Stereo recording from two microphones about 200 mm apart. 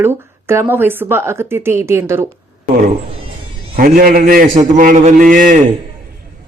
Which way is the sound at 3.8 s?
45° right (ahead or behind).